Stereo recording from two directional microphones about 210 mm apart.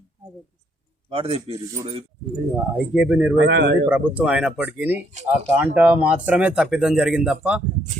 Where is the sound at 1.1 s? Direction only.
25° right (ahead or behind).